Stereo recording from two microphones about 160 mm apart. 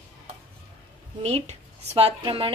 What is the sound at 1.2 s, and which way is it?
Speech, 40° right (ahead or behind).